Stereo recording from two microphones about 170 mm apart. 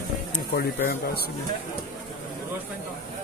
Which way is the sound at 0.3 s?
60° left (ahead or behind).